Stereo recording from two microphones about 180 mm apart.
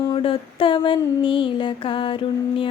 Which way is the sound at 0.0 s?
30° left (ahead or behind).